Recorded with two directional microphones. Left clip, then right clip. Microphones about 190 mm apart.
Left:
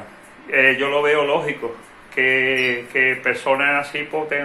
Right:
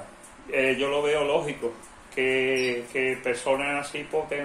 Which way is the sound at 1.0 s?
15° right (ahead or behind).